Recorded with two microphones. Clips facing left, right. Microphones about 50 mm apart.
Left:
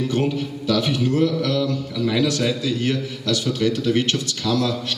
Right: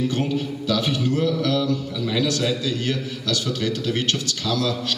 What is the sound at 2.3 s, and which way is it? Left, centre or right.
A man's voice, left.